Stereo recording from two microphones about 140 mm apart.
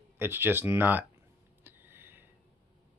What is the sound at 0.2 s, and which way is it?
Speech, 15° right (ahead or behind).